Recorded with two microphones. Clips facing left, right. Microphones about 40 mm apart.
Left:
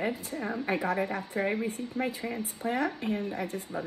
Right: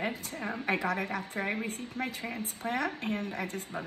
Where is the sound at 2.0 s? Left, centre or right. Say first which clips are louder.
Left 3 dB; right.